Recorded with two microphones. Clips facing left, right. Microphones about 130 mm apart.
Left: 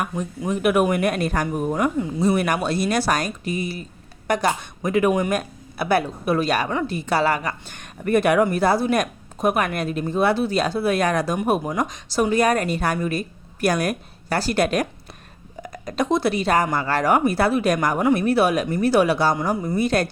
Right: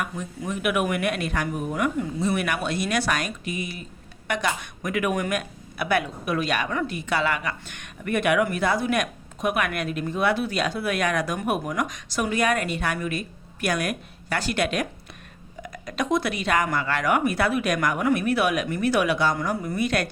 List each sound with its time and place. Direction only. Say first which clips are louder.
0.0 s a woman's voice: left 5 dB; 35° left (ahead or behind)